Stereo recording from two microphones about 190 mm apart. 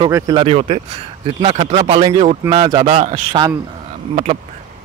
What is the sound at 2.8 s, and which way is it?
Speech, 35° right (ahead or behind).